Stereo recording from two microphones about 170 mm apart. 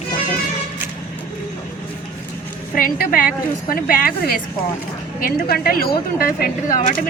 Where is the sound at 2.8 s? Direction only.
55° left (ahead or behind).